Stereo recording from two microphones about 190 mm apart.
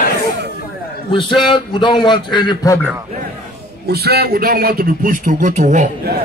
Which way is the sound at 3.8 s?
55° right (ahead or behind).